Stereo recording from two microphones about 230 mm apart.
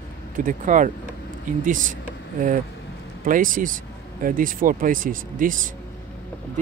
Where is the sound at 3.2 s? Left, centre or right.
Right.